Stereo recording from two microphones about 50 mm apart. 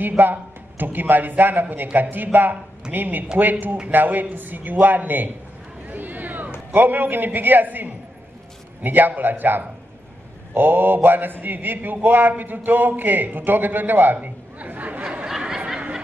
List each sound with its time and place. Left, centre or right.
0.2 s a man's voice: right
5.9 s a sound: right
6.7 s a man's voice: right
14.1 s chatter: right
15.2 s snicker: centre